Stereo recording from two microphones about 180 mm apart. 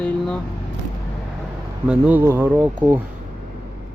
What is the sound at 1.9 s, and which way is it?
Speech, 10° right (ahead or behind).